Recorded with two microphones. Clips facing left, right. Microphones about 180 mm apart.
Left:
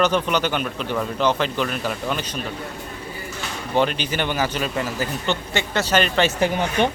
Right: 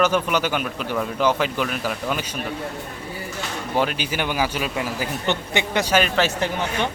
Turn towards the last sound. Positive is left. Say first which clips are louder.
# left 5 dB
turn(degrees=15)  # may be behind; listen again after turning